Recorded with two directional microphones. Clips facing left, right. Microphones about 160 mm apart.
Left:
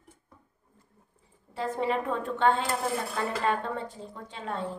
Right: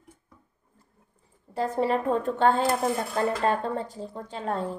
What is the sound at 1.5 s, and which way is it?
A woman's voice, 40° right (ahead or behind).